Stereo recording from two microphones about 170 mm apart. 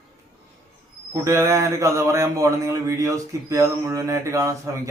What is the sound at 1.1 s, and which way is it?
Speech, 15° right (ahead or behind).